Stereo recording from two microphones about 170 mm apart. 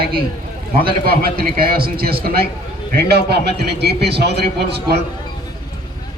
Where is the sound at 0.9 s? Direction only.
65° right (ahead or behind).